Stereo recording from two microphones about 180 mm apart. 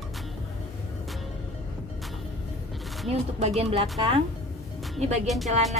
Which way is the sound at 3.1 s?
35° right (ahead or behind).